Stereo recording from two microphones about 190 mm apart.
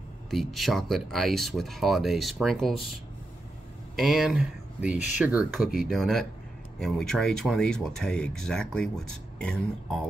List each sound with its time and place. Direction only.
0.3 s speech: centre (ahead or behind)
3.9 s speech: centre (ahead or behind)